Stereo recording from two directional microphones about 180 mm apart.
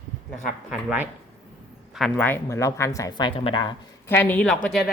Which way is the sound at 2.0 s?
5° left (ahead or behind).